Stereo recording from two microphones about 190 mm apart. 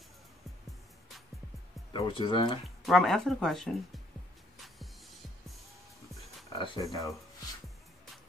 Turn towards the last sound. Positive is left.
turn(degrees=20)  # may be behind; listen again after turning